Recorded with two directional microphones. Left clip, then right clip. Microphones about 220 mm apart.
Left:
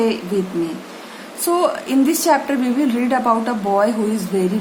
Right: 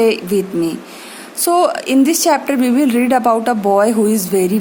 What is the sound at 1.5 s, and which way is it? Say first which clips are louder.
A woman's voice: right 4 dB; 45° right (ahead or behind).